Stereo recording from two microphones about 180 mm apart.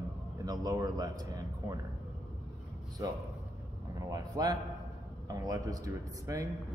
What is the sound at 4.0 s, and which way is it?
Speech, 20° right (ahead or behind).